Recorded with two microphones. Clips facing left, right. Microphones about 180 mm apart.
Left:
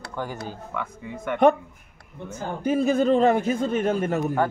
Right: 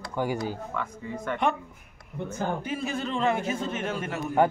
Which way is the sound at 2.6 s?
45° left (ahead or behind).